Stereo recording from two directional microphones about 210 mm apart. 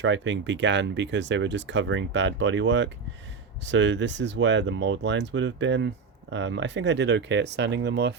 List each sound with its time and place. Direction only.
0.0 s speech: 60° right (ahead or behind)